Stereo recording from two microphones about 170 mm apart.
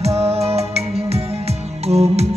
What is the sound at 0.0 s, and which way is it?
Music, 40° right (ahead or behind).